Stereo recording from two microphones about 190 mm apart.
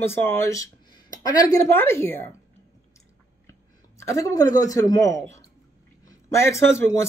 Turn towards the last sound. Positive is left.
turn(degrees=15)  # may be behind; listen again after turning